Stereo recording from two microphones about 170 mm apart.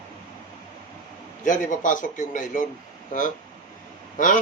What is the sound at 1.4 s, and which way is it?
Speech, 50° left (ahead or behind).